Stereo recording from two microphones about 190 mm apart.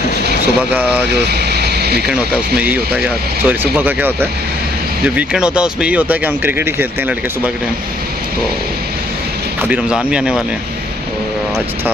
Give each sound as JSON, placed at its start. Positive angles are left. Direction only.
{"t": 0.2, "sound": "vehicle", "side_deg": -60}
{"t": 0.6, "sound": "speech", "side_deg": -5}
{"t": 1.1, "sound": "a sound", "side_deg": -60}
{"t": 2.0, "sound": "speech", "side_deg": -5}
{"t": 9.6, "sound": "speech", "side_deg": -5}